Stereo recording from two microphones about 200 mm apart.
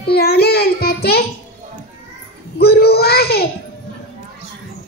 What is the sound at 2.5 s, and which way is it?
Child singing, 50° left (ahead or behind).